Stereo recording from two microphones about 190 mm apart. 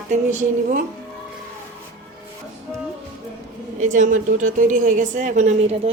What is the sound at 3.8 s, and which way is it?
A woman's voice, 40° right (ahead or behind).